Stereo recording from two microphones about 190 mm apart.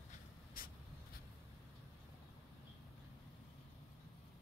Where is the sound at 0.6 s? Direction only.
50° left (ahead or behind).